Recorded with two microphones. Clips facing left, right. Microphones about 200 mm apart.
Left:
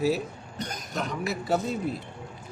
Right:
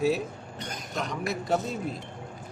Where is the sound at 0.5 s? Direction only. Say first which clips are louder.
Left 5 dB; 40° left (ahead or behind).